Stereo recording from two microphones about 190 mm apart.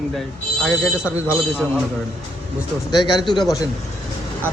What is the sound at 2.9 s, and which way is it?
Speech, 20° left (ahead or behind).